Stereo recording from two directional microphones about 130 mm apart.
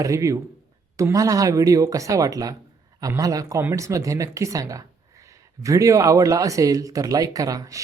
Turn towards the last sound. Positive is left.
turn(degrees=-25)  # may be behind; listen again after turning